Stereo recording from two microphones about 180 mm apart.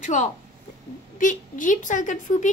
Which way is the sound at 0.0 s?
40° left (ahead or behind).